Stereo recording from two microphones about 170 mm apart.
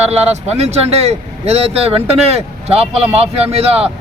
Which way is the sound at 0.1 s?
40° right (ahead or behind).